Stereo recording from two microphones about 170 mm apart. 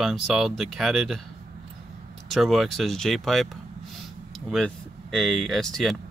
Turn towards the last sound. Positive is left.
turn(degrees=0)  # may be behind; listen again after turning